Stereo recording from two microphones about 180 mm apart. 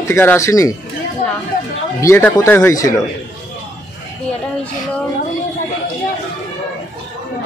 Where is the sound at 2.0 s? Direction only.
15° left (ahead or behind).